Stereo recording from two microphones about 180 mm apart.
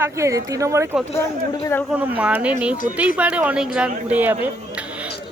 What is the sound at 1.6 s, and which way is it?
Speech, 15° left (ahead or behind).